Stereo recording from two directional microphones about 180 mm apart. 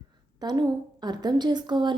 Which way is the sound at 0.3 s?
25° right (ahead or behind).